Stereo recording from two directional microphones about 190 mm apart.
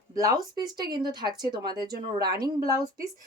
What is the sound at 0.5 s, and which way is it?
Speech, 20° right (ahead or behind).